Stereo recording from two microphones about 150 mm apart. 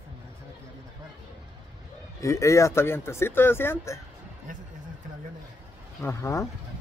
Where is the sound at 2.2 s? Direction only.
20° left (ahead or behind).